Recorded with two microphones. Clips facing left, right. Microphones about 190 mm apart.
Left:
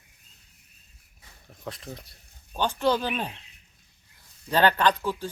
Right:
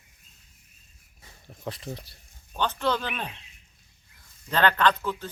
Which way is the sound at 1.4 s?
Centre (ahead or behind).